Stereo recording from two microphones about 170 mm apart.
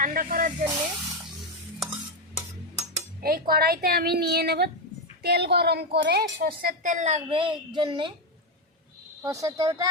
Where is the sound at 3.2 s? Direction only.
60° right (ahead or behind); by 8.1 s 30° right (ahead or behind).